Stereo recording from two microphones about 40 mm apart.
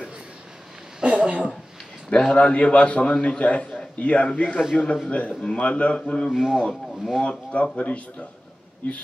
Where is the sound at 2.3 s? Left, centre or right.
Left.